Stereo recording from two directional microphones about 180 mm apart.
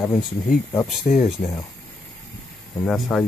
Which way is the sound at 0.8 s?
Centre (ahead or behind).